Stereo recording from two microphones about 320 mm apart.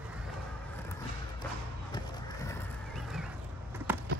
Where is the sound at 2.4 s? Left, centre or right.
Centre.